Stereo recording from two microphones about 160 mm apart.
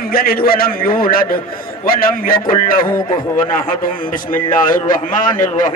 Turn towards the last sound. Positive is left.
turn(degrees=55)  # may be behind; listen again after turning